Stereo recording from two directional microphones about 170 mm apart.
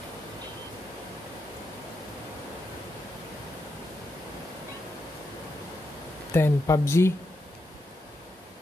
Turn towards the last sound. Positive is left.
turn(degrees=15)  # may be behind; listen again after turning